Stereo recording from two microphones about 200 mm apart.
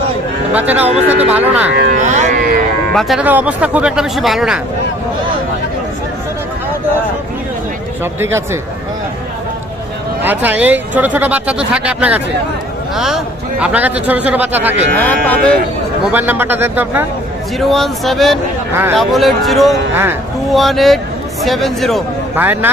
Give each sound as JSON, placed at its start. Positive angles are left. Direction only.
{"t": 0.5, "sound": "speech", "side_deg": -10}
{"t": 0.9, "sound": "speech", "side_deg": -35}
{"t": 1.3, "sound": "speech", "side_deg": -5}
{"t": 1.7, "sound": "speech", "side_deg": -55}
{"t": 2.0, "sound": "speech", "side_deg": -35}
{"t": 2.9, "sound": "speech", "side_deg": 0}
{"t": 10.2, "sound": "speech", "side_deg": -10}
{"t": 14.9, "sound": "speech", "side_deg": 10}
{"t": 16.0, "sound": "speech", "side_deg": -10}
{"t": 17.6, "sound": "speech", "side_deg": 0}
{"t": 18.7, "sound": "speech", "side_deg": -10}
{"t": 18.9, "sound": "speech", "side_deg": 0}
{"t": 22.4, "sound": "speech", "side_deg": -10}